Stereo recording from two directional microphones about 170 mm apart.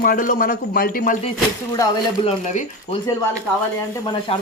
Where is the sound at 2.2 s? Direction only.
40° left (ahead or behind).